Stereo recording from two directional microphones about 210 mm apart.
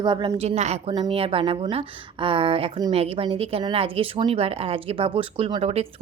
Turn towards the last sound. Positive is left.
turn(degrees=-25)  # may be behind; listen again after turning